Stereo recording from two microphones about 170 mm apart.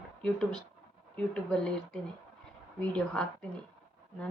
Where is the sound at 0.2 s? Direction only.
5° left (ahead or behind).